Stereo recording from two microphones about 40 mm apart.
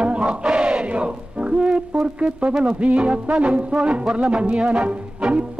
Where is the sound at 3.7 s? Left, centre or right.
Right.